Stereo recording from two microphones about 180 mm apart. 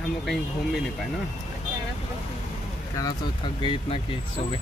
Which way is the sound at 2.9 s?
25° left (ahead or behind).